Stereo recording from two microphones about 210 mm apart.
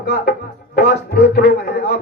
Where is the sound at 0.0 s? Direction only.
45° left (ahead or behind).